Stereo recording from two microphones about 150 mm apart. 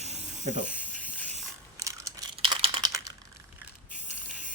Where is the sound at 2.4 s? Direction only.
35° right (ahead or behind).